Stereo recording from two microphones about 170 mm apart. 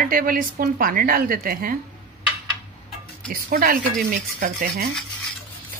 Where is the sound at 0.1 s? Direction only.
55° right (ahead or behind).